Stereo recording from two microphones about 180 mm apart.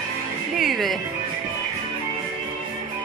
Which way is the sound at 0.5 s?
Centre (ahead or behind).